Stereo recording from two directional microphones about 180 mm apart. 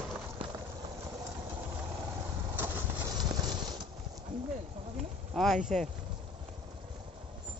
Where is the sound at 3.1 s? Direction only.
25° right (ahead or behind).